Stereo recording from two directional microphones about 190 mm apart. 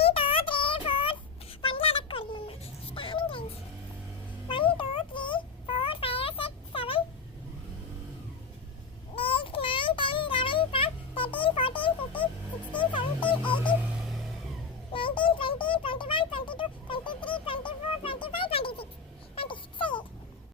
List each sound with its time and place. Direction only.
0.0 s child singing: 30° left (ahead or behind)
4.4 s a sound: 25° left (ahead or behind)
9.1 s child singing: 30° left (ahead or behind)
12.7 s music: 25° left (ahead or behind)
14.9 s music: 25° left (ahead or behind)